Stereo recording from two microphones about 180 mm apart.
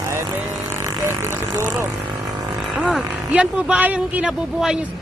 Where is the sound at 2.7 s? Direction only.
5° right (ahead or behind).